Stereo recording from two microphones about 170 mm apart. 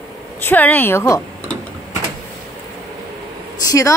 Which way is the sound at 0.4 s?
10° left (ahead or behind).